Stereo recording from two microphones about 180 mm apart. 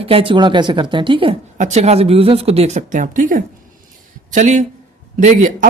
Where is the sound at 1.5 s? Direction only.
40° right (ahead or behind).